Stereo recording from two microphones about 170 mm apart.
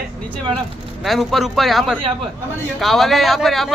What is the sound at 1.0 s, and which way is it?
A man's voice, centre (ahead or behind).